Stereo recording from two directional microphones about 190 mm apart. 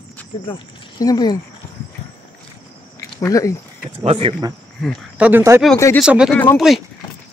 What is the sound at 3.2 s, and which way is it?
Speech, 15° left (ahead or behind).